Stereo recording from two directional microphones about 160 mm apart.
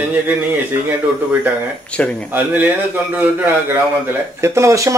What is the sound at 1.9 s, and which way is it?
Speech, 10° left (ahead or behind).